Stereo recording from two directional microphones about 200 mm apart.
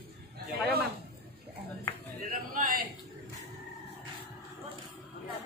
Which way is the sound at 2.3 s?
45° right (ahead or behind).